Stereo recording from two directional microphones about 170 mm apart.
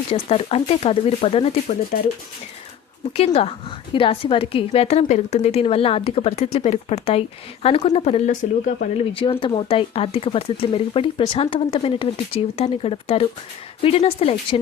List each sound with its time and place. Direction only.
0.1 s a woman's voice: 35° left (ahead or behind)
1.9 s speech: 50° left (ahead or behind)
3.1 s a woman's voice: 35° left (ahead or behind)
9.1 s a woman's voice: 30° left (ahead or behind)